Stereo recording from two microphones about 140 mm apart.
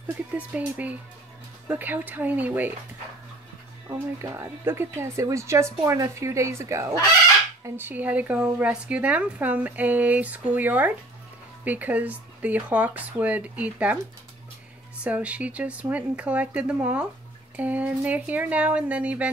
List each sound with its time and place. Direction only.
0.4 s speech: 10° right (ahead or behind)
3.9 s speech: 20° right (ahead or behind)
15.0 s speech: 10° right (ahead or behind)